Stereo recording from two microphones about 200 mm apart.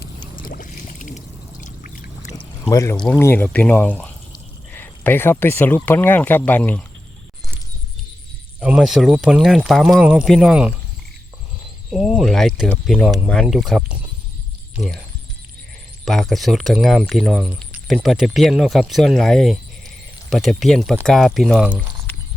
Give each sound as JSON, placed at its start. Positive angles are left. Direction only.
{"t": 0.4, "sound": "a sound", "side_deg": 45}
{"t": 1.6, "sound": "pour", "side_deg": 40}
{"t": 2.6, "sound": "speech", "side_deg": 15}
{"t": 8.6, "sound": "speech", "side_deg": -5}
{"t": 11.9, "sound": "speech", "side_deg": -5}
{"t": 16.0, "sound": "speech", "side_deg": 5}